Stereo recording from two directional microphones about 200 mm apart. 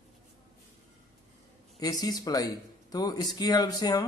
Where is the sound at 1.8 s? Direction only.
20° left (ahead or behind).